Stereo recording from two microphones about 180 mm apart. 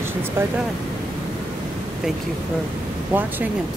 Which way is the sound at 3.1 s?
10° right (ahead or behind).